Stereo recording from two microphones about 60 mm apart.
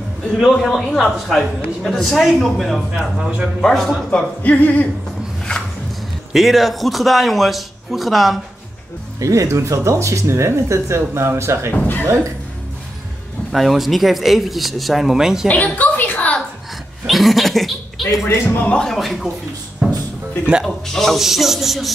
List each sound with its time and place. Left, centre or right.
0.5 s a man's voice: centre
3.2 s a man's voice: centre
3.6 s a man's voice: centre
4.4 s a sound: left
6.3 s a man's voice: centre
9.2 s speech: right
11.7 s a sound: left
13.5 s a man's voice: centre
15.4 s a sound: left
17.0 s a man's voice: centre
18.9 s a man's voice: centre
19.8 s music: centre
20.6 s a man's voice: centre